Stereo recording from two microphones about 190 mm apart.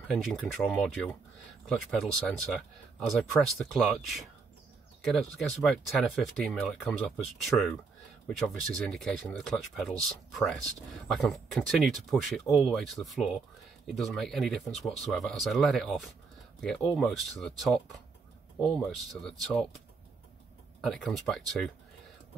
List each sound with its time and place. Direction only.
0.1 s speech: centre (ahead or behind)
20.8 s speech: 5° left (ahead or behind)